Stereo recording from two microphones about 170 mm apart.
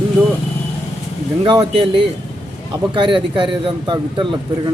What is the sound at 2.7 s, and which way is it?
Speech, 30° right (ahead or behind).